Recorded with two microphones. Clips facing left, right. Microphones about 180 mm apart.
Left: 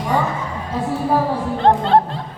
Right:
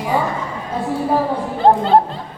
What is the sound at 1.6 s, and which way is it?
Speech, centre (ahead or behind).